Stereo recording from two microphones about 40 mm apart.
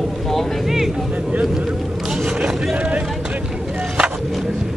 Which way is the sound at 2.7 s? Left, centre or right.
Right.